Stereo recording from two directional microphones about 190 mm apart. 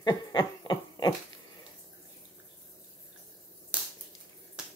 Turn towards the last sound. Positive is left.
turn(degrees=-5)  # may be behind; listen again after turning